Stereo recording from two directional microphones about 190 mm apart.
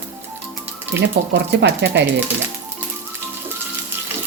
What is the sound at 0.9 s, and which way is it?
Speech, 65° right (ahead or behind).